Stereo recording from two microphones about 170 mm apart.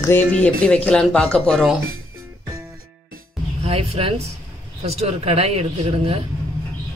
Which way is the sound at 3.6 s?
35° right (ahead or behind).